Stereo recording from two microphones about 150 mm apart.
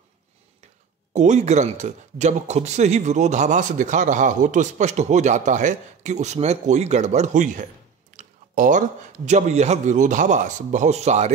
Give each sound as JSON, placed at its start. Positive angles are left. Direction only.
{"t": 1.1, "sound": "speech", "side_deg": -50}